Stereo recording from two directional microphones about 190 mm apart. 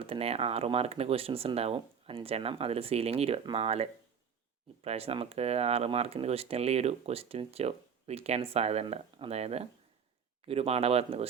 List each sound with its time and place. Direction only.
0.0 s speech: 30° right (ahead or behind)